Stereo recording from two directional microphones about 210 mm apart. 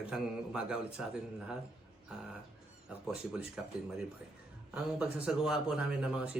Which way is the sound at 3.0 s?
Centre (ahead or behind).